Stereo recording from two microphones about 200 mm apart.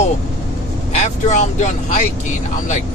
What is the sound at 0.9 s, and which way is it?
Speech, 35° left (ahead or behind).